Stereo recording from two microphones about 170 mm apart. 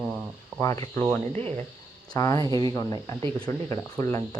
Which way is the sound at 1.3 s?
35° right (ahead or behind).